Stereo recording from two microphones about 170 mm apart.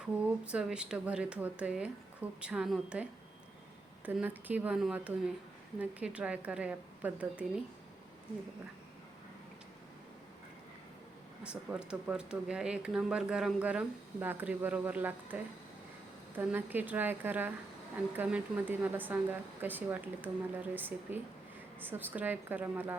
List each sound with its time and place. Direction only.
0.0 s a woman's voice: 5° right (ahead or behind)
11.4 s speech: 5° right (ahead or behind)